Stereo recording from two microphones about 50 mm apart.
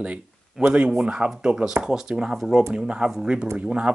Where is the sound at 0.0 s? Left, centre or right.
Right.